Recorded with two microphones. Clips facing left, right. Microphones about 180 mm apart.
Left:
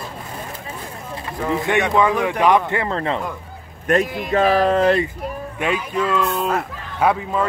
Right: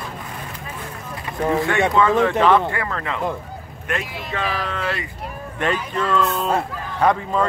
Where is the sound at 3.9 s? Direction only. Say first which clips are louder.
Left 9 dB; 45° left (ahead or behind).